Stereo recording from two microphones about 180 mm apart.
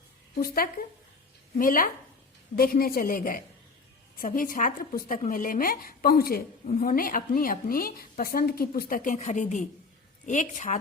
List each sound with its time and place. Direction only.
0.3 s a woman's voice: 55° left (ahead or behind)
6.7 s a woman's voice: 45° left (ahead or behind)